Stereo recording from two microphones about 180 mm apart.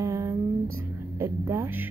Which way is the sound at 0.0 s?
15° right (ahead or behind).